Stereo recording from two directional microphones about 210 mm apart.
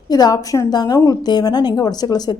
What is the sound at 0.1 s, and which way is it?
A woman's voice, 20° left (ahead or behind).